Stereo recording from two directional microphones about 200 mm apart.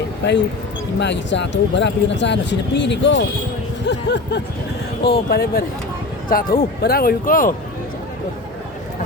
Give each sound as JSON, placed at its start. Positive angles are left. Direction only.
{"t": 0.2, "sound": "speech", "side_deg": 60}